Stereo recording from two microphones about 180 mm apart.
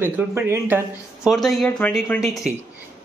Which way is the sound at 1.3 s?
Centre (ahead or behind).